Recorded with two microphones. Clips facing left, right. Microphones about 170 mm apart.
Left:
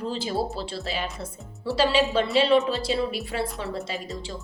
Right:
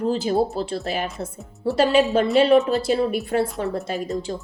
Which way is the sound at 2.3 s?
50° right (ahead or behind).